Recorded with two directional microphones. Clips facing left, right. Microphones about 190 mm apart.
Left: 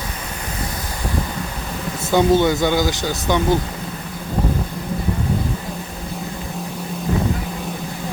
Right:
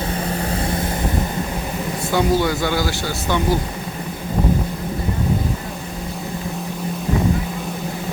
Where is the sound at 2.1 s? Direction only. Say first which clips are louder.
Left 4 dB; 20° left (ahead or behind).